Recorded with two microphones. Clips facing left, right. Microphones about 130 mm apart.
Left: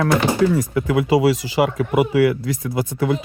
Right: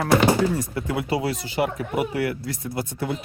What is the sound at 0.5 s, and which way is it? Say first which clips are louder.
Speech: left 7 dB; 90° left.